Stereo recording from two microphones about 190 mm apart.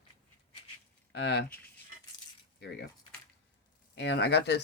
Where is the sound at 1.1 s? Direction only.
65° left (ahead or behind).